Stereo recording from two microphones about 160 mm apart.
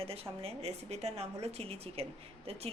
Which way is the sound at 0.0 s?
40° right (ahead or behind).